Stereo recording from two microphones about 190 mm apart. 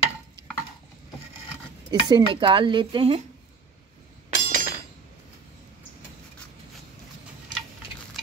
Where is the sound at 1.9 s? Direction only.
20° right (ahead or behind).